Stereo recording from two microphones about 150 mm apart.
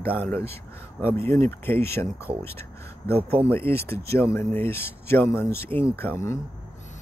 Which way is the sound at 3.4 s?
15° left (ahead or behind).